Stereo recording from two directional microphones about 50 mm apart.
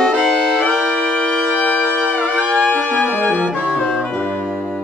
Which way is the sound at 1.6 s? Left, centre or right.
Left.